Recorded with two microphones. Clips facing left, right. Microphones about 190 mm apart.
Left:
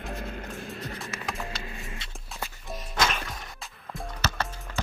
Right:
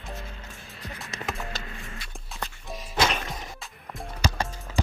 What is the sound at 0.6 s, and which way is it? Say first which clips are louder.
Music: left 5 dB; centre (ahead or behind).